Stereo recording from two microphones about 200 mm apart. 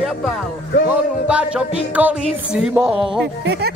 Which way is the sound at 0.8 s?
5° right (ahead or behind).